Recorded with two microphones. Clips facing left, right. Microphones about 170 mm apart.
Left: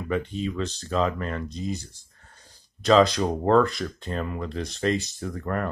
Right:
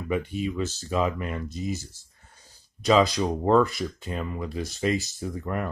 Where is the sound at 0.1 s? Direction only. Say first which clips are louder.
Even; 10° right (ahead or behind).